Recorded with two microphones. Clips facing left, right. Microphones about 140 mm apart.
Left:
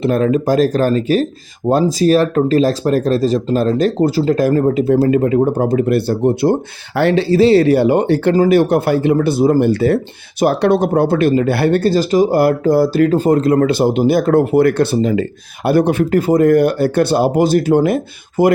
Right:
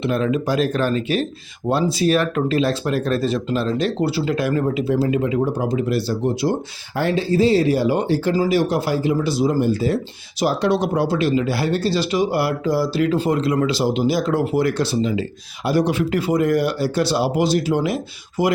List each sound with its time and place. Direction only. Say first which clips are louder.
0.0 s speech: left 6 dB; 45° left (ahead or behind)